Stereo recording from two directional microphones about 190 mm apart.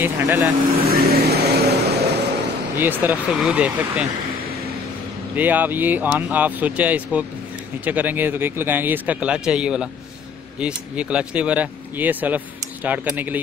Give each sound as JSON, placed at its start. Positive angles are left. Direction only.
{"t": 0.0, "sound": "speech", "side_deg": -10}
{"t": 0.8, "sound": "vehicle", "side_deg": -55}
{"t": 2.8, "sound": "speech", "side_deg": -10}
{"t": 5.3, "sound": "speech", "side_deg": -10}